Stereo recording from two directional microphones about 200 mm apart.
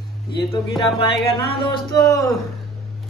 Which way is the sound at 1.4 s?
25° left (ahead or behind).